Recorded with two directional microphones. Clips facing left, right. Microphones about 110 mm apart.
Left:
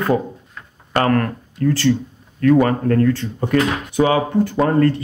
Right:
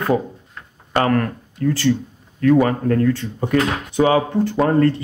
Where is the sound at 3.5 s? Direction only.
30° right (ahead or behind).